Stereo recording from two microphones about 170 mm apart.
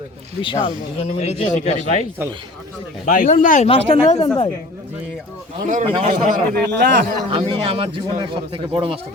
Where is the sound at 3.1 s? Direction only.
50° left (ahead or behind).